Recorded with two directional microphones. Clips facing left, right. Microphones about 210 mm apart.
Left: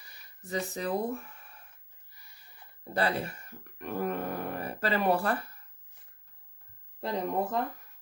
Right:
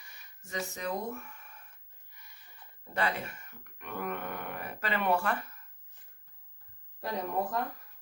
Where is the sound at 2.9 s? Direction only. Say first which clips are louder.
Left 3 dB; 35° left (ahead or behind).